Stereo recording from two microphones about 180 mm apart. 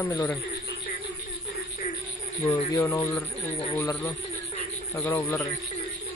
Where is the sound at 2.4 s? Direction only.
10° left (ahead or behind).